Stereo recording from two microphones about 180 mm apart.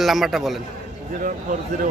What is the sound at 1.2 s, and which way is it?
Speech, 50° right (ahead or behind).